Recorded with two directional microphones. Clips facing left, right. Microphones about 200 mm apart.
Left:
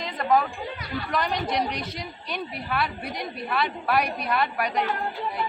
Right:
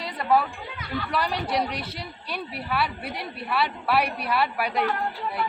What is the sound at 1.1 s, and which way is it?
A woman's voice, 5° right (ahead or behind).